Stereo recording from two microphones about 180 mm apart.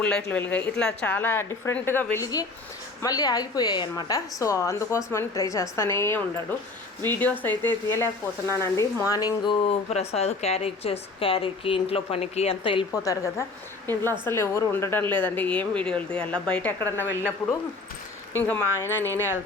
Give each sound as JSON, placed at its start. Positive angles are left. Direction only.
{"t": 0.3, "sound": "a woman's voice", "side_deg": 10}
{"t": 9.6, "sound": "a woman's voice", "side_deg": 35}
{"t": 18.3, "sound": "a woman's voice", "side_deg": 10}